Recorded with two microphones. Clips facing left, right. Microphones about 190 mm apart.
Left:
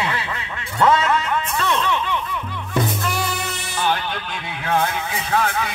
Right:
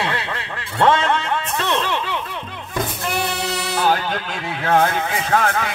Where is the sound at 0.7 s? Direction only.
30° right (ahead or behind).